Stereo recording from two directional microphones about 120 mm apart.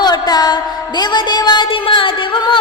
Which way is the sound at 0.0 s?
35° left (ahead or behind).